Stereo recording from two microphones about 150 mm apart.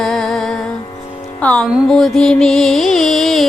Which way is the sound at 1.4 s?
5° left (ahead or behind).